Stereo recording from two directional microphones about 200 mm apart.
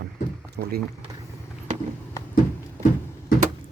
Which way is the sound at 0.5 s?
55° right (ahead or behind).